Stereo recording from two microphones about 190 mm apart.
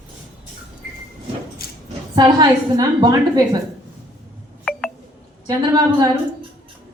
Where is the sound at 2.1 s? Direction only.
20° right (ahead or behind).